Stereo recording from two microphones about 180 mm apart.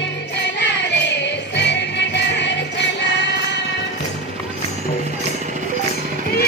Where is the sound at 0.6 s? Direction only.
75° left (ahead or behind).